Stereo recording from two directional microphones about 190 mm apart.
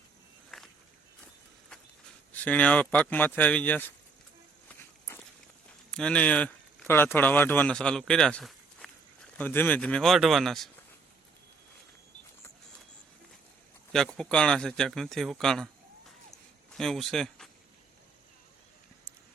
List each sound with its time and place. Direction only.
0.5 s walk: centre (ahead or behind)
2.3 s speech: 10° left (ahead or behind)
4.8 s walk: 15° left (ahead or behind)
5.9 s speech: 5° left (ahead or behind)
14.2 s speech: 5° left (ahead or behind)
16.7 s speech: centre (ahead or behind)